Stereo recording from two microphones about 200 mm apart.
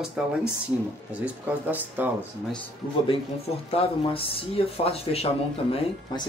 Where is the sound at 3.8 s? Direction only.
30° left (ahead or behind).